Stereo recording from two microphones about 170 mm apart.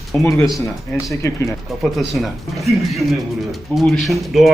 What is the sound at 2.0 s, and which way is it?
Speech, centre (ahead or behind).